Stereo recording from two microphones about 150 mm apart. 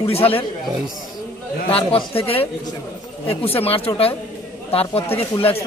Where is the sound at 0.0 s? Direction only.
40° left (ahead or behind).